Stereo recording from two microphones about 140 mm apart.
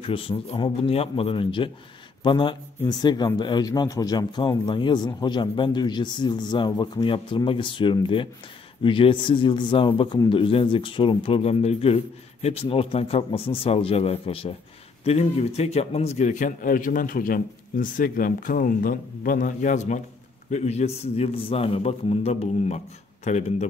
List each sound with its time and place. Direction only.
0.0 s a man's voice: 40° left (ahead or behind); by 20.0 s 60° left (ahead or behind)
20.5 s a man's voice: 50° left (ahead or behind)